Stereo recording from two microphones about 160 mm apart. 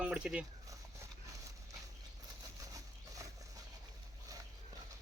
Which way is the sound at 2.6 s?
20° right (ahead or behind).